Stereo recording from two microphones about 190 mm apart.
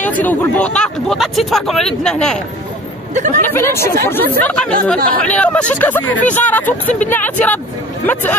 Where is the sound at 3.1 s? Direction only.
40° right (ahead or behind).